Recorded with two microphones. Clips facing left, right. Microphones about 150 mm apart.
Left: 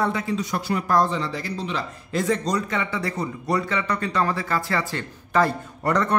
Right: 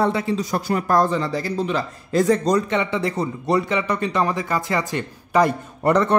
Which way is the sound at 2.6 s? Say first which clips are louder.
Right 5 dB; 25° right (ahead or behind).